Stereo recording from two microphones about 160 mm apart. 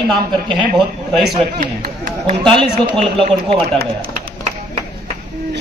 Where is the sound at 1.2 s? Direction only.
65° right (ahead or behind).